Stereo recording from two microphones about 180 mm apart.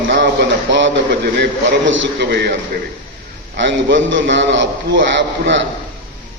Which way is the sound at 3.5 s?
80° right.